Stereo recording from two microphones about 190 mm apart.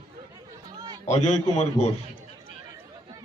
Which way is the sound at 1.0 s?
35° left (ahead or behind).